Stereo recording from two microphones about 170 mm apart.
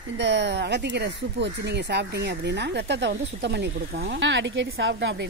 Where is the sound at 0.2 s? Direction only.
90° right.